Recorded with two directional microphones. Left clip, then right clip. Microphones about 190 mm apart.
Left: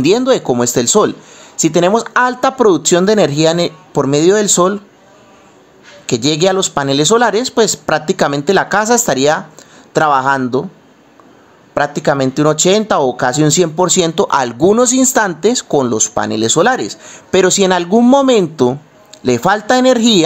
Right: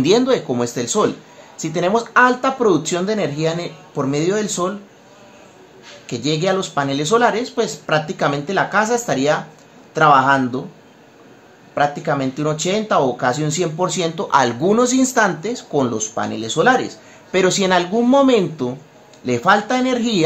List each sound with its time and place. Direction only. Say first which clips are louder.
0.0 s speech: left 4 dB; 40° left (ahead or behind)
6.0 s speech: left 7 dB; 45° left (ahead or behind)
11.7 s speech: left 4 dB; 50° left (ahead or behind)